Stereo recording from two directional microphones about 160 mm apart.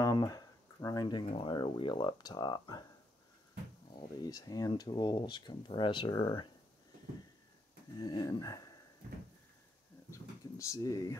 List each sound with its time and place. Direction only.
0.0 s speech: 25° left (ahead or behind)
3.9 s speech: 25° left (ahead or behind)
8.0 s speech: 25° left (ahead or behind)
10.6 s speech: 20° left (ahead or behind)